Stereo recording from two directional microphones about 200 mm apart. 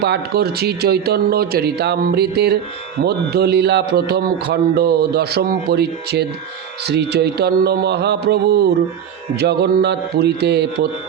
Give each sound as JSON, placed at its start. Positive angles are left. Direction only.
{"t": 0.0, "sound": "speech", "side_deg": -55}